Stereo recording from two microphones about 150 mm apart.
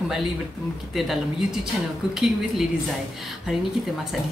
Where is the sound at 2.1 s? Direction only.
Centre (ahead or behind).